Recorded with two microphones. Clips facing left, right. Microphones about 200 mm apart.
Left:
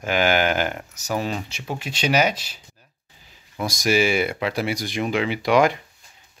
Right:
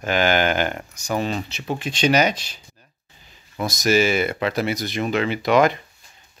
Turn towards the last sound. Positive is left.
turn(degrees=10)  # may be behind; listen again after turning